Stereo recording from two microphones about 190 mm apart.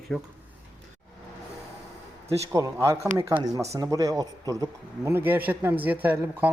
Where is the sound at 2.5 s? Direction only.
15° right (ahead or behind).